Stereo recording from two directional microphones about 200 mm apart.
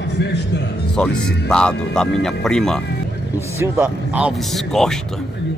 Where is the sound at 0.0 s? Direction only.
60° left (ahead or behind).